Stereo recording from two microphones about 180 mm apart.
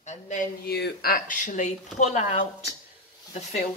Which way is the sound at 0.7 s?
65° left (ahead or behind).